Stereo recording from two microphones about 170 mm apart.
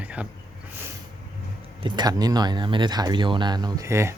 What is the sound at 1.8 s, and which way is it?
Speech, 25° right (ahead or behind).